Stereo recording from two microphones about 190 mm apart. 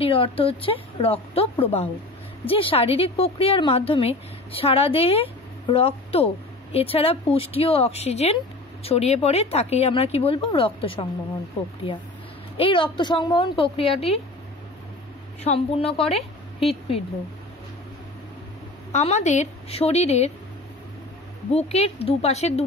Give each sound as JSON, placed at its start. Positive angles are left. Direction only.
{"t": 0.0, "sound": "a woman's voice", "side_deg": 30}
{"t": 12.5, "sound": "a woman's voice", "side_deg": 25}
{"t": 15.4, "sound": "a woman's voice", "side_deg": 30}
{"t": 18.9, "sound": "a woman's voice", "side_deg": 35}
{"t": 21.5, "sound": "a woman's voice", "side_deg": 35}